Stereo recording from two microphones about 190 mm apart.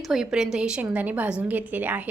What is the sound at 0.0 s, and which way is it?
A woman's voice, centre (ahead or behind).